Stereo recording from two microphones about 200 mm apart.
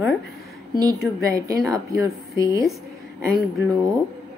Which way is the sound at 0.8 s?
15° right (ahead or behind).